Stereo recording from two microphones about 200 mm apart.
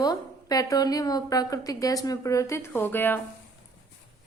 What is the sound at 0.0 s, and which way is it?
Speech, 20° left (ahead or behind).